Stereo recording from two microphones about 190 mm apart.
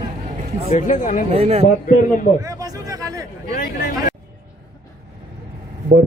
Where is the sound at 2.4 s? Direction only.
20° right (ahead or behind).